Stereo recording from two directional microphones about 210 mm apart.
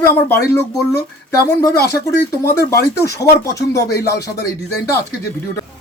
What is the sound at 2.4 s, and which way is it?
Speech, 15° left (ahead or behind).